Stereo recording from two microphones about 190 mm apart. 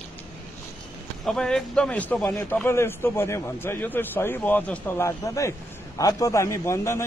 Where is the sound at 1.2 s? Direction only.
5° left (ahead or behind).